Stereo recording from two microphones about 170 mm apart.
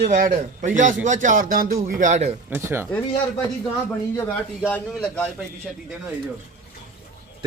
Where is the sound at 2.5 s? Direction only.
15° right (ahead or behind).